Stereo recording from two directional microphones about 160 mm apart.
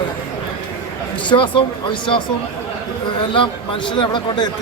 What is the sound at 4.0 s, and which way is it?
Speech, 30° left (ahead or behind).